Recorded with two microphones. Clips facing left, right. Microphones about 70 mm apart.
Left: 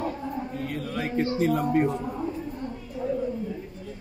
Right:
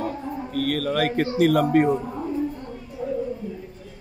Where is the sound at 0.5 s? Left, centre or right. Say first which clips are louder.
Right 8 dB; right.